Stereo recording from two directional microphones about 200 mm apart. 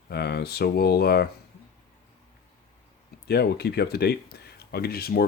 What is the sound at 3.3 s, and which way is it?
Speech, 55° left (ahead or behind).